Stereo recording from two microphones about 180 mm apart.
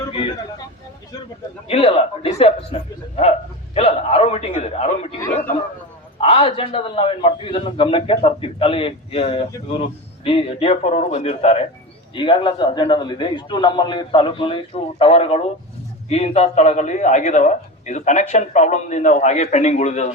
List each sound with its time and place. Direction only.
1.6 s a man's voice: 35° left (ahead or behind)
6.1 s a man's voice: 35° left (ahead or behind)